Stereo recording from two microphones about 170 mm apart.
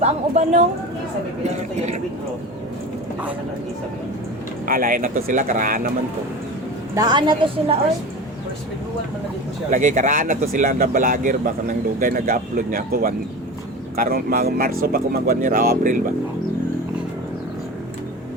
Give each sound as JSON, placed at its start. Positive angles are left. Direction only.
{"t": 0.0, "sound": "speech", "side_deg": -45}
{"t": 4.6, "sound": "speech", "side_deg": -55}
{"t": 6.9, "sound": "a woman's voice", "side_deg": -25}
{"t": 9.6, "sound": "speech", "side_deg": -50}